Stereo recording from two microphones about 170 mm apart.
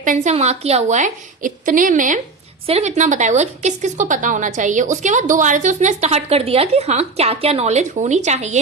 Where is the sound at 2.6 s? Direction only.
40° right (ahead or behind).